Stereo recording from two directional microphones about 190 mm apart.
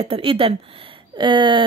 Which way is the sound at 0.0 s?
30° right (ahead or behind).